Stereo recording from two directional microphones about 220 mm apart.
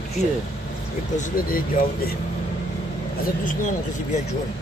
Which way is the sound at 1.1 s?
35° left (ahead or behind).